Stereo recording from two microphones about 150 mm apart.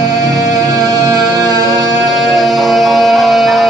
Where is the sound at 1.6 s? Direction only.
25° right (ahead or behind).